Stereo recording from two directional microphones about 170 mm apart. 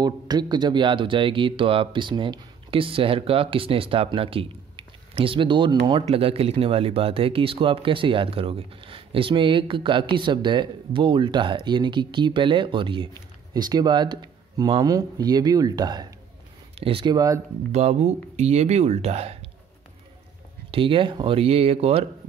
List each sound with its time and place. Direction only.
0.0 s speech: 25° right (ahead or behind)
17.6 s speech: 40° right (ahead or behind)
20.7 s speech: 30° right (ahead or behind)